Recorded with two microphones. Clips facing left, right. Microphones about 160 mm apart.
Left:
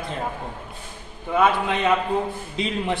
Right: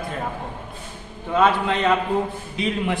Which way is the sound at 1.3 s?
15° left (ahead or behind).